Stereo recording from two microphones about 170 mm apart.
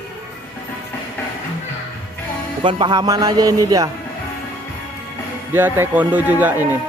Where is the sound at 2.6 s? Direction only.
25° right (ahead or behind).